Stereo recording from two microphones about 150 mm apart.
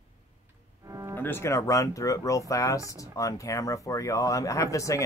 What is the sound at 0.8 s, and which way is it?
Speech, 20° right (ahead or behind).